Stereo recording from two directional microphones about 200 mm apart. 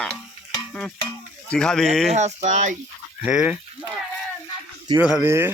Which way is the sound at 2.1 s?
35° right (ahead or behind).